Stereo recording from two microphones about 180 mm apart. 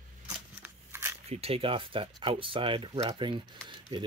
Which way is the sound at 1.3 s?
35° right (ahead or behind).